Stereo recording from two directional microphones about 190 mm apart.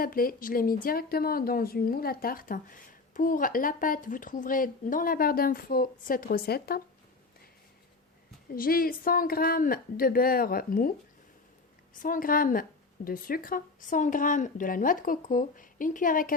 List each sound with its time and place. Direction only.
0.0 s speech: 50° left (ahead or behind)
8.5 s speech: 50° left (ahead or behind)
11.9 s speech: 45° left (ahead or behind)